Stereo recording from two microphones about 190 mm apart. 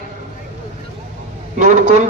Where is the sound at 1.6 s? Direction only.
40° right (ahead or behind).